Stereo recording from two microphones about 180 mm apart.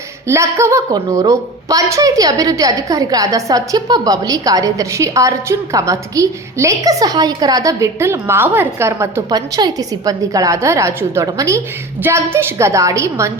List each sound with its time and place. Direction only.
0.3 s a woman's voice: 15° right (ahead or behind)